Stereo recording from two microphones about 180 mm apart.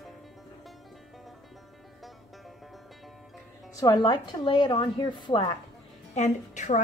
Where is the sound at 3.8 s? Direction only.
25° left (ahead or behind).